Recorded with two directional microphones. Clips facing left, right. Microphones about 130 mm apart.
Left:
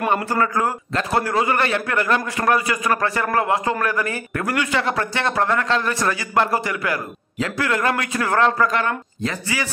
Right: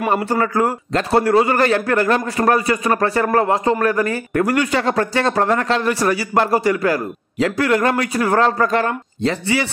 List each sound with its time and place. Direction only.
0.4 s a man's voice: 30° right (ahead or behind)
8.2 s a man's voice: 20° right (ahead or behind)
8.5 s a man's voice: 35° right (ahead or behind)